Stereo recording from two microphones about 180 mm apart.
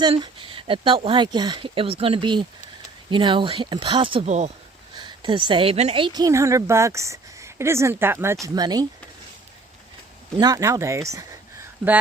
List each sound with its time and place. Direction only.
0.0 s speech: 25° right (ahead or behind)
4.3 s speech: 40° right (ahead or behind)
4.9 s a sound: 25° right (ahead or behind)
5.5 s a woman's voice: 30° right (ahead or behind)
10.3 s a woman's voice: 20° right (ahead or behind)